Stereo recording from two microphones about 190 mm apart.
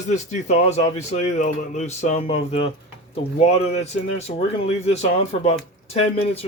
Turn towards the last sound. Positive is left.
turn(degrees=30)  # may be behind; listen again after turning